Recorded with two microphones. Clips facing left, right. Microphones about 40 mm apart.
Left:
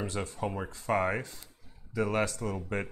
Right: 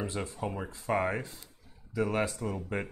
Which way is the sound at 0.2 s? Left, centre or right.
Centre.